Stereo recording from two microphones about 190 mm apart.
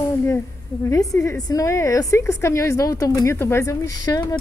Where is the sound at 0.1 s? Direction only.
15° left (ahead or behind).